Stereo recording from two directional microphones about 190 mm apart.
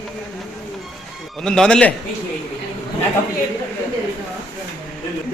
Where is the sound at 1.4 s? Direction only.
5° left (ahead or behind).